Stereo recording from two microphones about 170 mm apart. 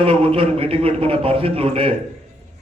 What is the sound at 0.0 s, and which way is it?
A man's voice, 30° right (ahead or behind).